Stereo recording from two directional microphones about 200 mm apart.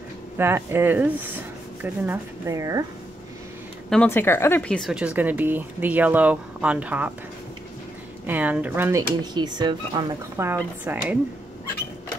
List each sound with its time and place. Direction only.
0.4 s a woman's voice: 10° right (ahead or behind)
3.9 s a woman's voice: 10° left (ahead or behind); by 7.1 s 5° right (ahead or behind)
8.3 s a woman's voice: 10° right (ahead or behind)